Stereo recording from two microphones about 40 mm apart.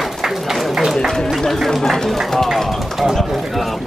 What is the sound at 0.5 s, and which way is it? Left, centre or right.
Speech, centre.